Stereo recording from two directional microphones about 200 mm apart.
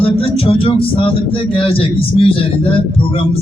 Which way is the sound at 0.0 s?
30° left (ahead or behind).